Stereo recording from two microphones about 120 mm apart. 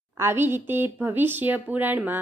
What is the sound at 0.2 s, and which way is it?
A woman's voice, 20° right (ahead or behind).